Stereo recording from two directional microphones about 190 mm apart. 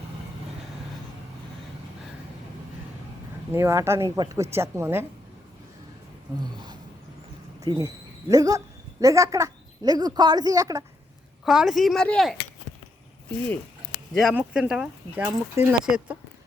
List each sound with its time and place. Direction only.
3.5 s speech: 15° right (ahead or behind)
7.6 s speech: 20° right (ahead or behind)
11.4 s speech: centre (ahead or behind)
14.1 s speech: centre (ahead or behind)